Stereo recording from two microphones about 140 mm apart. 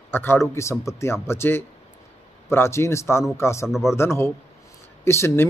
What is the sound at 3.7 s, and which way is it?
Speech, centre (ahead or behind).